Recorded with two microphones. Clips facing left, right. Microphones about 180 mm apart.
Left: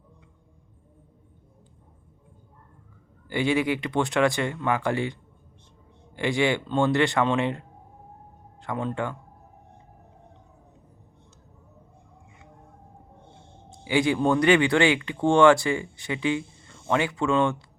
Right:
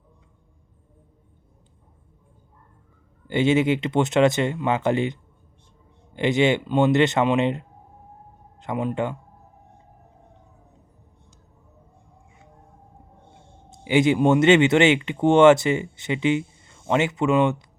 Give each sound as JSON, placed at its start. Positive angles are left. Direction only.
{"t": 3.2, "sound": "speech", "side_deg": -25}
{"t": 8.6, "sound": "speech", "side_deg": -15}
{"t": 13.7, "sound": "speech", "side_deg": -20}